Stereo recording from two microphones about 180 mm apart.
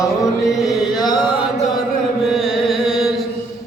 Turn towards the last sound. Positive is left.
turn(degrees=0)  # may be behind; listen again after turning